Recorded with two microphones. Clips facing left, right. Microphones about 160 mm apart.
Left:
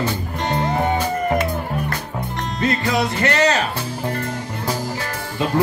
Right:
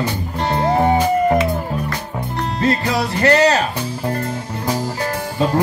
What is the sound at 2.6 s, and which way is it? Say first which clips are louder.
Music: right 1 dB; 35° right (ahead or behind).